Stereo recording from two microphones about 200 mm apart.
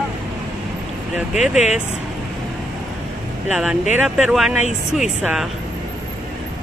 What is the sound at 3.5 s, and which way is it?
Speech, 5° right (ahead or behind).